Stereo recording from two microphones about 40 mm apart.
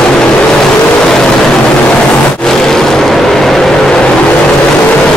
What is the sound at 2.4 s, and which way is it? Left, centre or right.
Vehicle, centre.